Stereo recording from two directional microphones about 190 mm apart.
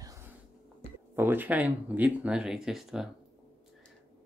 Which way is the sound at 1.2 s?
10° right (ahead or behind).